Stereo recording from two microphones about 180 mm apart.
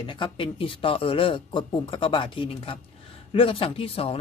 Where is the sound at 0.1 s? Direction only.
30° left (ahead or behind).